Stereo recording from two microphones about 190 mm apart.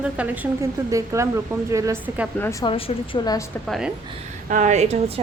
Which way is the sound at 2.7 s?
30° left (ahead or behind).